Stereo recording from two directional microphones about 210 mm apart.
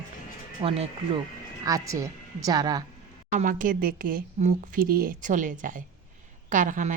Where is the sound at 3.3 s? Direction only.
40° right (ahead or behind).